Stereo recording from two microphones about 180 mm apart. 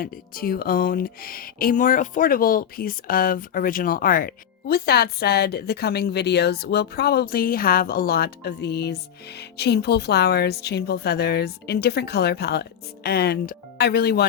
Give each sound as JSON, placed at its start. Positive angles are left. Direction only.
{"t": 0.0, "sound": "speech", "side_deg": 55}